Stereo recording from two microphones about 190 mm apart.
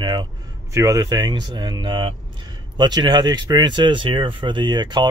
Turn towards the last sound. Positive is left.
turn(degrees=-25)  # may be behind; listen again after turning